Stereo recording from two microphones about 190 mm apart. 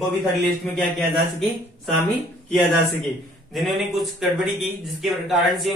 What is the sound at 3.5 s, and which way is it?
A man's voice, centre (ahead or behind).